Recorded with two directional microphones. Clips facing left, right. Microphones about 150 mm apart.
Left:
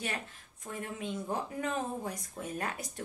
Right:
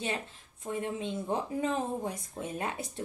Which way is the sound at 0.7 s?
20° right (ahead or behind).